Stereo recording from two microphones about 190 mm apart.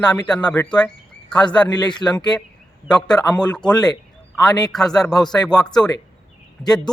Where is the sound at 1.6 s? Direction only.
20° left (ahead or behind).